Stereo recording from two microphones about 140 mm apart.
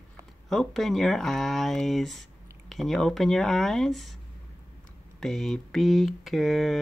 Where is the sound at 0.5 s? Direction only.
Centre (ahead or behind).